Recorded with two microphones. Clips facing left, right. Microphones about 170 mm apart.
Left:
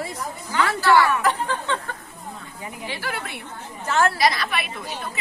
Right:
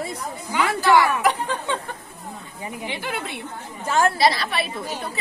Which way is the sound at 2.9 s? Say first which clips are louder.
Even; 20° right (ahead or behind).